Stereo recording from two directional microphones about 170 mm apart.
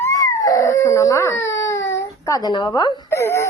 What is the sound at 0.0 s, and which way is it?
Dog, 20° left (ahead or behind).